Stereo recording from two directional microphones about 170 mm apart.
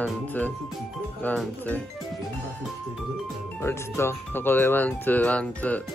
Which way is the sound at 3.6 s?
15° left (ahead or behind).